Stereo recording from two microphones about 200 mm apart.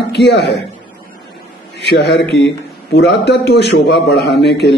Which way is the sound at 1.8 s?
60° left (ahead or behind).